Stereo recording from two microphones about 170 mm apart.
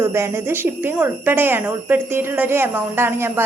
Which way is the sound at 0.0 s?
15° right (ahead or behind).